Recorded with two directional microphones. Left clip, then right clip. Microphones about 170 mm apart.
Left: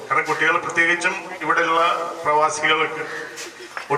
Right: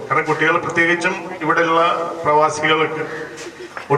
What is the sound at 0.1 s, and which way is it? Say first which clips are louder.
Speech: right 2 dB; 15° right (ahead or behind).